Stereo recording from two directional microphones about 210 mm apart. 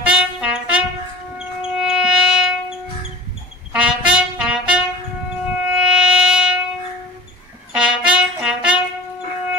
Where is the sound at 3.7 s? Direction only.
5° right (ahead or behind).